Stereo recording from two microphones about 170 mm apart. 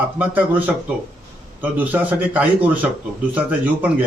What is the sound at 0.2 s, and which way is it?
A man's voice, 10° right (ahead or behind).